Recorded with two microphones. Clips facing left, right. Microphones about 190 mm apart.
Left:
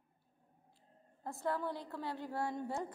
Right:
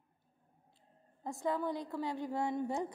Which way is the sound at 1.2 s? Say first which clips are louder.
Right 3 dB; 15° right (ahead or behind).